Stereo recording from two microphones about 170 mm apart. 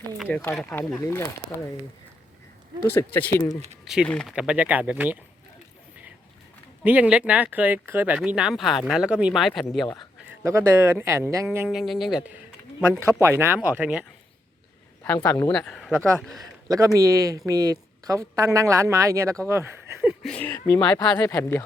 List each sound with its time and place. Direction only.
0.3 s speech: 10° left (ahead or behind)
2.8 s speech: 15° left (ahead or behind)
3.8 s speech: 5° right (ahead or behind)
6.8 s speech: 10° right (ahead or behind)
9.8 s a man's voice: 25° left (ahead or behind)
10.2 s speech: 15° right (ahead or behind)
11.8 s speech: centre (ahead or behind)
13.1 s speech: 15° right (ahead or behind)
15.0 s speech: 15° left (ahead or behind)
15.5 s speech: 5° left (ahead or behind)
16.4 s speech: 20° right (ahead or behind)
20.2 s speech: 10° left (ahead or behind)